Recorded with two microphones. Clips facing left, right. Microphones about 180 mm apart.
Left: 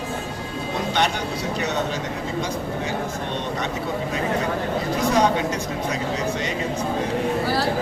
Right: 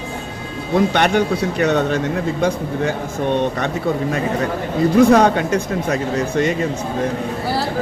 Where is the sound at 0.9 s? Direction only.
55° right (ahead or behind).